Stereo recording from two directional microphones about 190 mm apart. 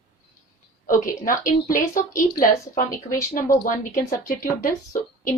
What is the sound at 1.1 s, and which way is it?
Speech, 45° left (ahead or behind).